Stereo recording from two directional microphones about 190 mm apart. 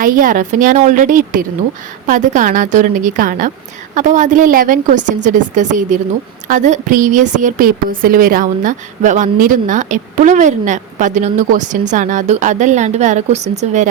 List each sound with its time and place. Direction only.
0.0 s a woman's voice: 45° right (ahead or behind)